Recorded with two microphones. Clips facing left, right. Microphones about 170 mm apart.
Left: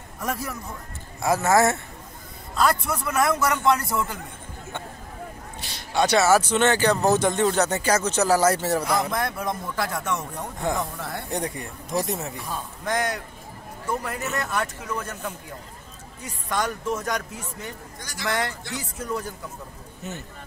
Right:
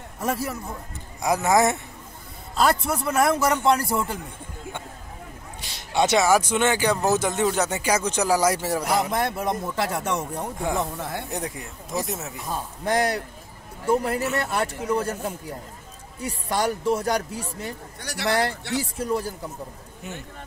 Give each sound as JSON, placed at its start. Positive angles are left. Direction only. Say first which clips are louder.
{"t": 0.2, "sound": "speech", "louder": "right 3 dB", "side_deg": -25}
{"t": 2.5, "sound": "speech", "louder": "right 1 dB", "side_deg": -30}
{"t": 5.6, "sound": "speech", "louder": "right 1 dB", "side_deg": -20}
{"t": 9.1, "sound": "speech", "louder": "right 2 dB", "side_deg": -25}
{"t": 11.2, "sound": "speech", "louder": "left 2 dB", "side_deg": -5}
{"t": 12.4, "sound": "speech", "louder": "right 5 dB", "side_deg": -35}
{"t": 18.0, "sound": "a man's voice", "louder": "right 4 dB", "side_deg": -65}
{"t": 18.8, "sound": "speech", "louder": "right 4 dB", "side_deg": -30}
{"t": 20.0, "sound": "speech", "louder": "left 1 dB", "side_deg": -10}